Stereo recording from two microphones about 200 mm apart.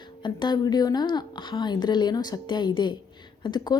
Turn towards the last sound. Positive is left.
turn(degrees=20)  # may be behind; listen again after turning